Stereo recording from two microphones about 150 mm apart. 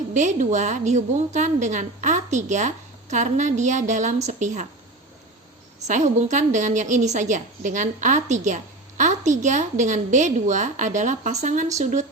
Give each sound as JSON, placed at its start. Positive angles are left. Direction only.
{"t": 0.1, "sound": "a woman's voice", "side_deg": -55}
{"t": 5.9, "sound": "a woman's voice", "side_deg": -55}